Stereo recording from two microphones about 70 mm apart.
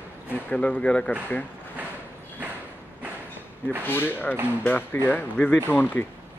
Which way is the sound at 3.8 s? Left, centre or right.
Left.